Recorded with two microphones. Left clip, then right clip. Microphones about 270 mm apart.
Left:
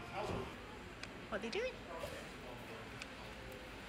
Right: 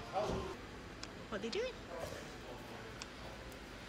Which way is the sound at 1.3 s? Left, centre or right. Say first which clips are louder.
Right 1 dB; centre.